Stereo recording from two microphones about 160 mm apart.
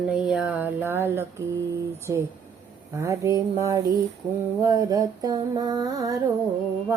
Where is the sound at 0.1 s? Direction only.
5° right (ahead or behind).